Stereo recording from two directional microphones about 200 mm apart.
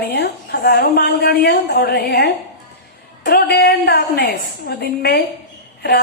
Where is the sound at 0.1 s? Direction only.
50° left (ahead or behind).